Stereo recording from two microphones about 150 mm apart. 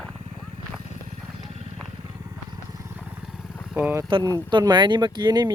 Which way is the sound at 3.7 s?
10° right (ahead or behind).